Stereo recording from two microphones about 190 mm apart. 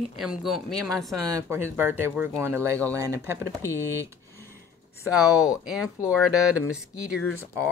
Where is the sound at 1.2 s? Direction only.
15° right (ahead or behind).